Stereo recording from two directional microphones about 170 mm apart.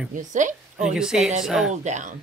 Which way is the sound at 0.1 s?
50° right (ahead or behind).